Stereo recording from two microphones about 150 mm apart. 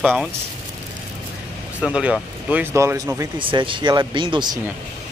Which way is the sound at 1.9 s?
5° right (ahead or behind).